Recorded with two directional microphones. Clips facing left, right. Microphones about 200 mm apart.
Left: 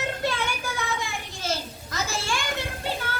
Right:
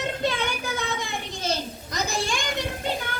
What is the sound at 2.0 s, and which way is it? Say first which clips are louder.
Children playing: right 2 dB; 15° right (ahead or behind).